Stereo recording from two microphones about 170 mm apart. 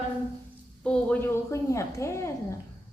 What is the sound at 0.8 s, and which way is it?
A woman's voice, 5° left (ahead or behind).